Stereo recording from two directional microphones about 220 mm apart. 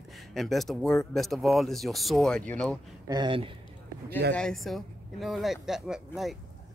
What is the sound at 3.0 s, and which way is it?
Speech, 20° right (ahead or behind).